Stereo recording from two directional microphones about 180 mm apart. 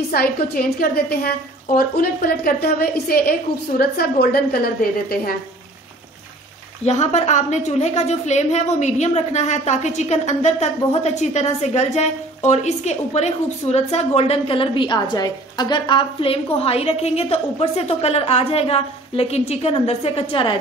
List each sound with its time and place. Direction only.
0.1 s a woman's voice: 55° left (ahead or behind)
6.8 s a woman's voice: 40° left (ahead or behind)